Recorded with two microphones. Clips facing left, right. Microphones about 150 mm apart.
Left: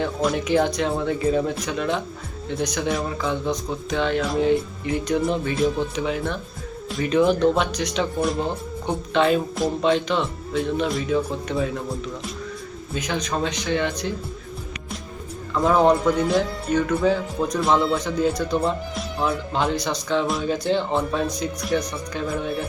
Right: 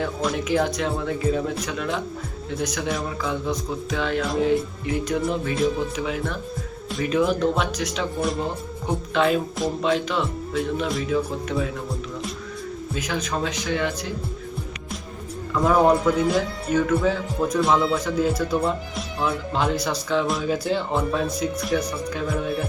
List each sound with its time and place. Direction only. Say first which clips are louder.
0.0 s speech: left 2 dB; centre (ahead or behind)
12.9 s speech: left 2 dB; 5° right (ahead or behind)
15.6 s speech: even; 5° right (ahead or behind)